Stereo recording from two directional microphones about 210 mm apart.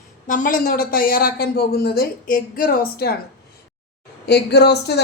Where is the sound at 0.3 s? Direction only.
40° left (ahead or behind).